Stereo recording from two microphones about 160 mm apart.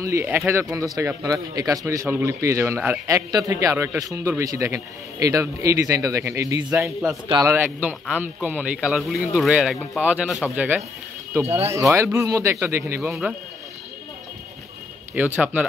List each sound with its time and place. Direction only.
0.0 s a man's voice: 15° right (ahead or behind)
7.5 s speech: 10° right (ahead or behind)
15.1 s speech: 10° right (ahead or behind)